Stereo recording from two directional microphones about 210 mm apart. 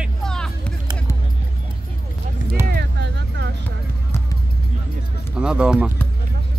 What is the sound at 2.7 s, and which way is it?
Vehicle, 55° right (ahead or behind).